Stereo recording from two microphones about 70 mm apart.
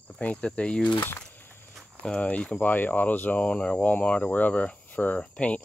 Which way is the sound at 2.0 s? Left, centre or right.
Centre.